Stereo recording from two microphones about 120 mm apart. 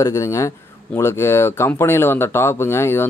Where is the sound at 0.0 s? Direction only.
25° left (ahead or behind).